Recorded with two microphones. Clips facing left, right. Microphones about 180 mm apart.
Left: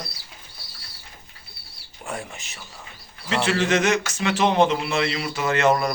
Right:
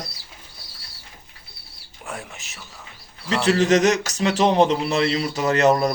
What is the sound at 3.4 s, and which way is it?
A man's voice, 40° right (ahead or behind).